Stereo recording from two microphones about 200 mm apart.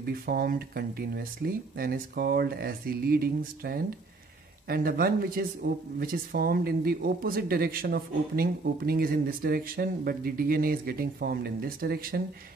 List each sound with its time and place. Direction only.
0.0 s speech: 50° right (ahead or behind)